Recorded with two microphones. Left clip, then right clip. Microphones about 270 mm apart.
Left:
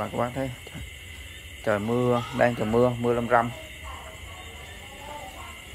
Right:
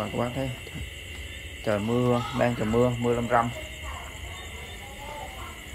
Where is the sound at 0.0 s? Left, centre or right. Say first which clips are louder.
Left 1 dB; centre.